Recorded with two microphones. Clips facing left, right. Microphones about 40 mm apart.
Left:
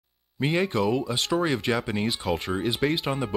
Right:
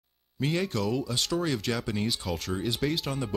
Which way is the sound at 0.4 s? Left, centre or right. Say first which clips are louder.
Left 4 dB; left.